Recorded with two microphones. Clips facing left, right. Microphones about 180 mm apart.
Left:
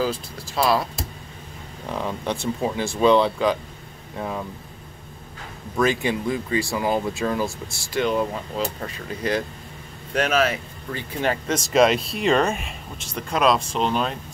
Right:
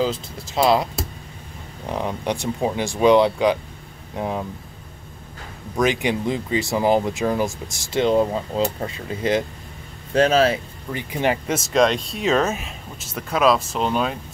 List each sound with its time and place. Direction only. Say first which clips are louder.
0.0 s speech: right 2 dB; 20° right (ahead or behind)
1.9 s speech: right 2 dB; 15° right (ahead or behind)
5.8 s speech: right 1 dB; 15° right (ahead or behind)
10.9 s speech: right 3 dB; 15° right (ahead or behind)